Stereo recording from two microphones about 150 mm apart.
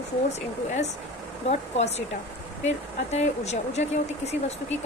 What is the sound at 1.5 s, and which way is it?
Speech, 45° left (ahead or behind).